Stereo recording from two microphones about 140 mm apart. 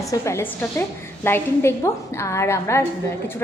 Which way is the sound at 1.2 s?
15° left (ahead or behind).